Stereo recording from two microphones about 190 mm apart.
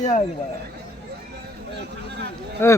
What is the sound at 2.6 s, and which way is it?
Speech, 10° left (ahead or behind).